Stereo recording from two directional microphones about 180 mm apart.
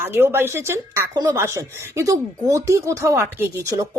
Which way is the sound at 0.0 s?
15° right (ahead or behind).